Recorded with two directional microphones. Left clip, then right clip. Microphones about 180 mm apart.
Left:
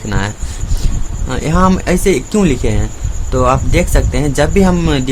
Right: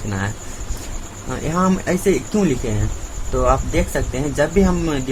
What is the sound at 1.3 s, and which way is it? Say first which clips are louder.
Speech: left 7 dB; 45° left (ahead or behind).